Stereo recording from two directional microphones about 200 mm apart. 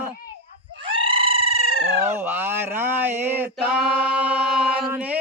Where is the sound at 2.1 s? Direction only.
10° right (ahead or behind).